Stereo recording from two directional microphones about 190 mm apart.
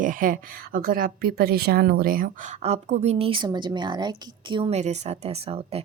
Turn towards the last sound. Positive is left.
turn(degrees=-30)  # may be behind; listen again after turning